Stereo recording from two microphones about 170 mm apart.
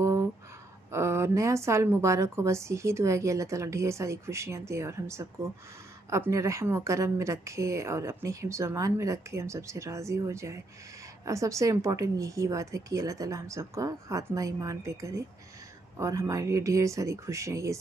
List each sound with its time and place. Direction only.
0.9 s a woman's voice: 15° right (ahead or behind)